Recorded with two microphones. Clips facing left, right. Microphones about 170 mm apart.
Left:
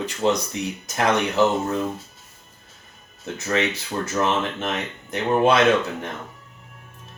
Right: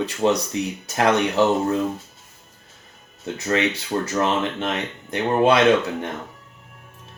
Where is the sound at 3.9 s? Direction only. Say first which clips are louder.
Right 4 dB; 40° right (ahead or behind).